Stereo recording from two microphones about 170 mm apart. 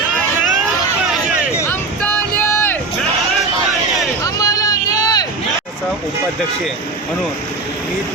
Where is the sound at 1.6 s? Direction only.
10° left (ahead or behind).